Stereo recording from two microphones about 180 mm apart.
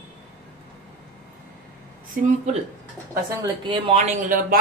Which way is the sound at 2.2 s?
40° right (ahead or behind).